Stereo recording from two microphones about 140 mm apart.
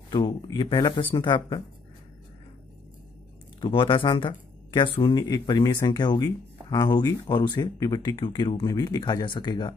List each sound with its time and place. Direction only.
0.1 s speech: 35° left (ahead or behind)
3.6 s speech: 35° left (ahead or behind)